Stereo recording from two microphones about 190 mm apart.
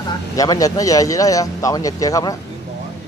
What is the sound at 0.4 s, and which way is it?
A man's voice, 20° left (ahead or behind).